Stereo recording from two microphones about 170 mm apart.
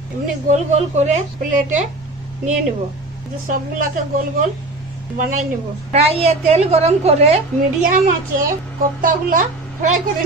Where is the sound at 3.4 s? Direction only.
50° right (ahead or behind).